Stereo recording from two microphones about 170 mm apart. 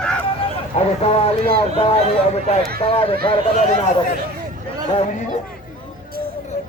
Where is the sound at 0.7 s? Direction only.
35° left (ahead or behind).